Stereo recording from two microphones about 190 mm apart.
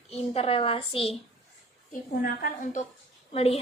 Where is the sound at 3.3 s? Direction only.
35° left (ahead or behind).